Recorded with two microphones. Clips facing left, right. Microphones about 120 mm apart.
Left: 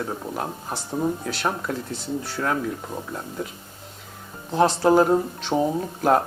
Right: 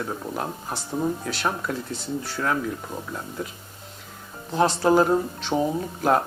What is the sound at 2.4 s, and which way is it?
Speech, 30° left (ahead or behind).